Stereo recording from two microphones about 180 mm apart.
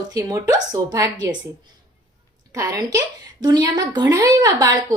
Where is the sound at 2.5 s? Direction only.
20° right (ahead or behind).